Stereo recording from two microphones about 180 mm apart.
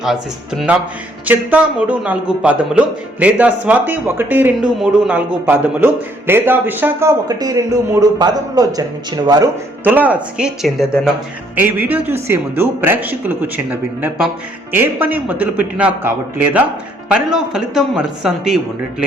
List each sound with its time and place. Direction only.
0.0 s a man's voice: centre (ahead or behind); by 9.5 s 20° right (ahead or behind)
9.8 s a man's voice: 10° right (ahead or behind)